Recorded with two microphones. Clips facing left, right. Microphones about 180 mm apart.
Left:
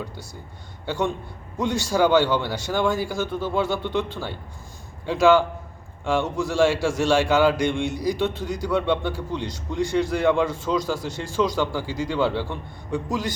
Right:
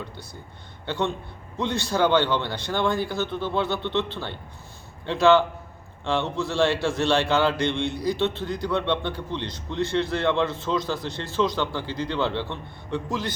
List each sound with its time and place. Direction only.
0.9 s a man's voice: 10° left (ahead or behind)